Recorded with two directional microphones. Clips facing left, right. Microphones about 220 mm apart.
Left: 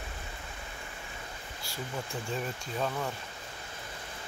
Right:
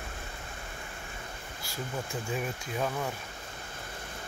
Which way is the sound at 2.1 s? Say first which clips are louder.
Right 1 dB; 10° right (ahead or behind).